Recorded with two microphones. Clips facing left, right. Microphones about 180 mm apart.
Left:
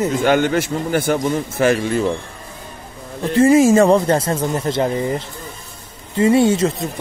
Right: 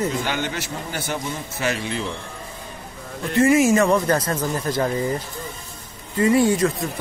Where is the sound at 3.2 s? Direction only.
30° left (ahead or behind).